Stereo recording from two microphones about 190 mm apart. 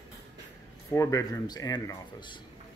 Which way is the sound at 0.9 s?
15° left (ahead or behind).